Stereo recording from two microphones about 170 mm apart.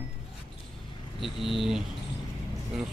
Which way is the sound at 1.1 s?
Centre (ahead or behind).